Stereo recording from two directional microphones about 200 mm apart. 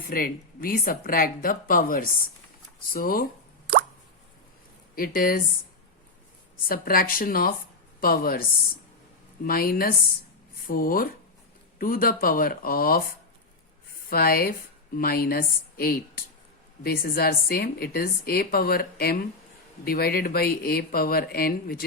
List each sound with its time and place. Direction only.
0.1 s a woman's voice: 45° left (ahead or behind)
4.9 s a woman's voice: 45° left (ahead or behind)
6.7 s a woman's voice: 45° left (ahead or behind)
9.5 s a woman's voice: 45° left (ahead or behind)
14.1 s a woman's voice: 50° left (ahead or behind)